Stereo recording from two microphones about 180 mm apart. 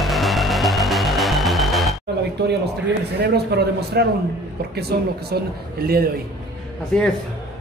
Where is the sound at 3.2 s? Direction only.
65° right (ahead or behind).